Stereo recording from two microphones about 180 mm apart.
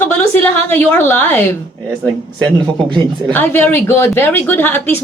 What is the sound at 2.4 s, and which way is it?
Speech, 25° right (ahead or behind).